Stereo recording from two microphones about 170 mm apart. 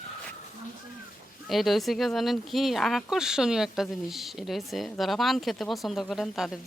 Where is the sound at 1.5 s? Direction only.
Centre (ahead or behind).